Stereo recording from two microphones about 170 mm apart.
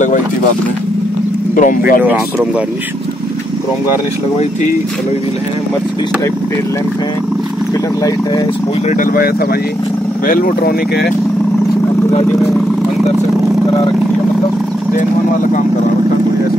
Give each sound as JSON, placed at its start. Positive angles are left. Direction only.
{"t": 1.5, "sound": "speech", "side_deg": 55}
{"t": 8.9, "sound": "speech", "side_deg": 55}